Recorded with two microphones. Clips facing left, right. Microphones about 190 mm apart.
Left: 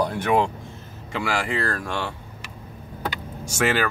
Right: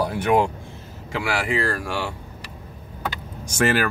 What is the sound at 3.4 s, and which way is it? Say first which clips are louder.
Speech: right 2 dB; 15° right (ahead or behind).